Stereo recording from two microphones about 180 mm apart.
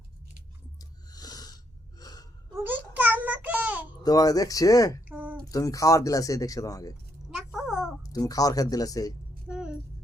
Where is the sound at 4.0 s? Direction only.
20° left (ahead or behind).